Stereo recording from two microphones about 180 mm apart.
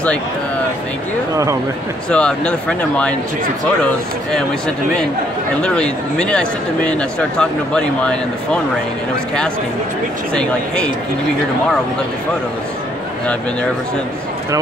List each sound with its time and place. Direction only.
1.3 s speech: 20° right (ahead or behind)
2.0 s speech: 5° left (ahead or behind)
5.6 s speech: 5° left (ahead or behind)